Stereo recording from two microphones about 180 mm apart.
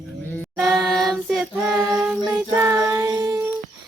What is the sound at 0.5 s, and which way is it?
Child singing, centre (ahead or behind).